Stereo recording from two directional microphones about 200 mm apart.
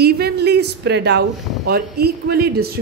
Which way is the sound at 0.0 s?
55° right (ahead or behind).